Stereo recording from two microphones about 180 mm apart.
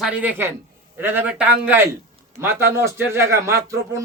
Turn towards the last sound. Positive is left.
turn(degrees=-15)  # may be behind; listen again after turning